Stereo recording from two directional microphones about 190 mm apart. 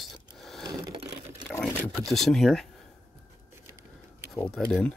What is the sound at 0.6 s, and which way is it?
Sewing machine, 20° right (ahead or behind).